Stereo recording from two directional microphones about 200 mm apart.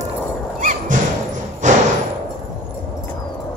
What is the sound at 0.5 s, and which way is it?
Thump, 40° right (ahead or behind).